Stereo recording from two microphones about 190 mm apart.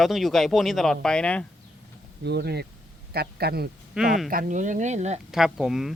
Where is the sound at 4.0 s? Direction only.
5° right (ahead or behind).